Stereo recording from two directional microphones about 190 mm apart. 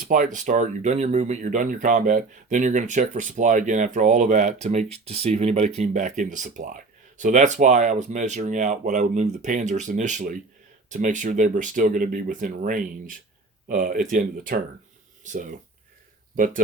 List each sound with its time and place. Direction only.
0.0 s speech: 45° right (ahead or behind)